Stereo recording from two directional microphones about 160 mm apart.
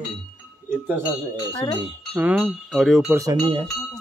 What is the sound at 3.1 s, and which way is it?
Speech, 20° right (ahead or behind).